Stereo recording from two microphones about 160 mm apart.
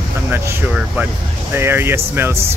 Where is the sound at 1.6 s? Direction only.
15° right (ahead or behind).